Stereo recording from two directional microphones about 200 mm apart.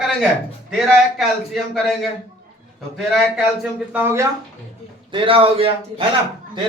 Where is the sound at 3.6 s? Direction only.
10° right (ahead or behind).